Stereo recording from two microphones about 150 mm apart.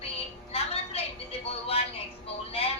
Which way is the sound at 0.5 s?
40° left (ahead or behind).